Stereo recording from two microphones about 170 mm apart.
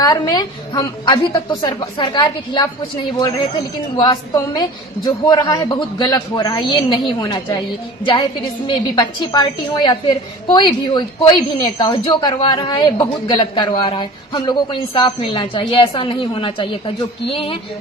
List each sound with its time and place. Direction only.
0.0 s a woman's voice: 25° left (ahead or behind)
3.9 s a woman's voice: 25° left (ahead or behind)
8.6 s a woman's voice: 30° left (ahead or behind)
17.3 s a sound: 35° left (ahead or behind)